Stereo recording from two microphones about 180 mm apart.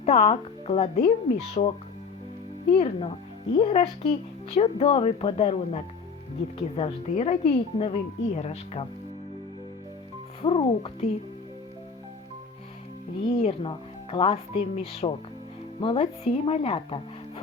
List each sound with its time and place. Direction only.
0.0 s a woman's voice: 35° left (ahead or behind)
10.4 s a woman's voice: 30° left (ahead or behind)
13.2 s a woman's voice: 30° left (ahead or behind)